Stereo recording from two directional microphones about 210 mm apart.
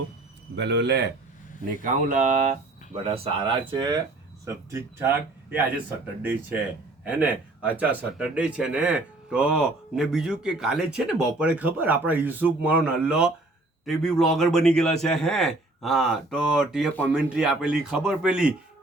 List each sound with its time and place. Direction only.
0.5 s speech: 55° right (ahead or behind)
1.8 s speech: 35° right (ahead or behind); by 5.8 s 10° right (ahead or behind)
7.0 s speech: 5° right (ahead or behind)